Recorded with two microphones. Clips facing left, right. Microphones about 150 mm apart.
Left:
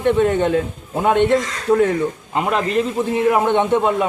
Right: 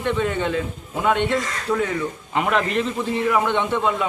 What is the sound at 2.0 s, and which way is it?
Speech, 30° left (ahead or behind).